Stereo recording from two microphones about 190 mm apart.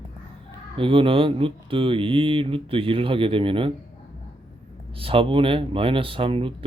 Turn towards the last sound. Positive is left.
turn(degrees=-30)  # may be behind; listen again after turning